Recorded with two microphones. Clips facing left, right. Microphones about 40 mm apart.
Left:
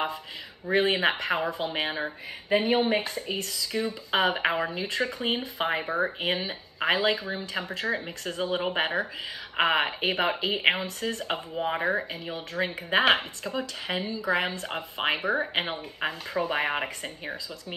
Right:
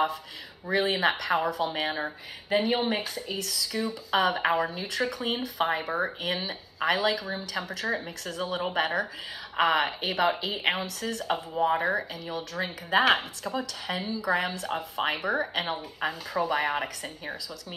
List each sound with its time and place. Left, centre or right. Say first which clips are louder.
0.7 s speech: left 1 dB; left
5.9 s speech: left 2 dB; centre
6.2 s speech: left 2 dB; left